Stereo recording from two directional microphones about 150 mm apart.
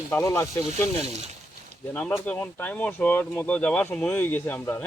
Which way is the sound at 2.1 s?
10° left (ahead or behind).